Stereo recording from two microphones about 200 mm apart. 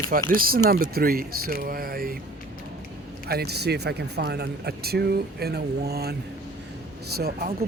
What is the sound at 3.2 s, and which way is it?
Speech, 50° right (ahead or behind).